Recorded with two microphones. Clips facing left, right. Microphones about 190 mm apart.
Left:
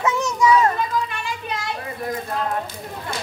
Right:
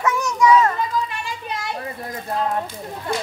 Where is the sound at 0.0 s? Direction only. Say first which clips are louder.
Right 1 dB; 25° left (ahead or behind).